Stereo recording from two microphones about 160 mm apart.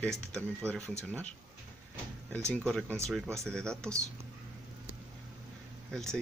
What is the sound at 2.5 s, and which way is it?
Speech, 5° left (ahead or behind).